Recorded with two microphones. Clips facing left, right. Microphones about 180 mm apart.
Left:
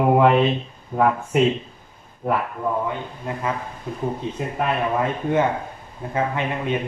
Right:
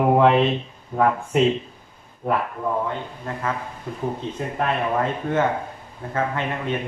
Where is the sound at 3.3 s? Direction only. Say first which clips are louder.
Left 2 dB; 15° left (ahead or behind).